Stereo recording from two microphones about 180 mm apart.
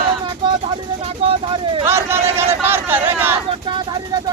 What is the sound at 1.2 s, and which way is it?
Speech, 30° right (ahead or behind).